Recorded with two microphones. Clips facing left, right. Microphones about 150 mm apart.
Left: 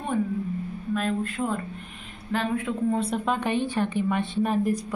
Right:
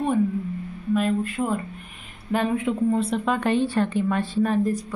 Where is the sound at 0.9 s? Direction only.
5° right (ahead or behind).